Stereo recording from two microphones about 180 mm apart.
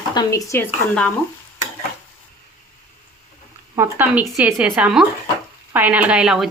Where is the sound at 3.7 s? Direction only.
10° right (ahead or behind).